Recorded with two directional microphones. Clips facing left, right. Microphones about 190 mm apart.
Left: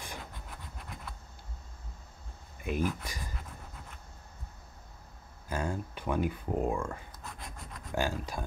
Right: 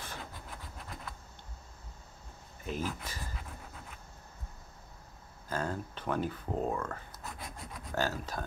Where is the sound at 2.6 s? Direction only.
15° left (ahead or behind).